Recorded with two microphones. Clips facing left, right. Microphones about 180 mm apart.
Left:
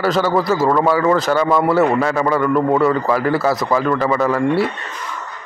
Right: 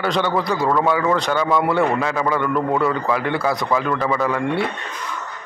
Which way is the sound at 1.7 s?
5° left (ahead or behind).